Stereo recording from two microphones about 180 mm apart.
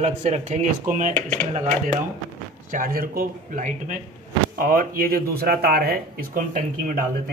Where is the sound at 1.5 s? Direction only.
40° right (ahead or behind).